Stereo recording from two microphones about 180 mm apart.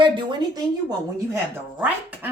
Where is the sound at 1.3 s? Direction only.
10° right (ahead or behind).